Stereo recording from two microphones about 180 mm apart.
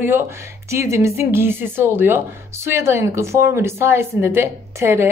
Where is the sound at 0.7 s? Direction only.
15° right (ahead or behind).